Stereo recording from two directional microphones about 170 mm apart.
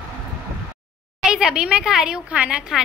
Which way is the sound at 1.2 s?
5° right (ahead or behind).